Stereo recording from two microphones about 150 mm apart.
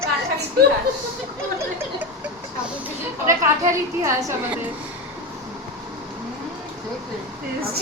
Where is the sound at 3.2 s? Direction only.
20° right (ahead or behind).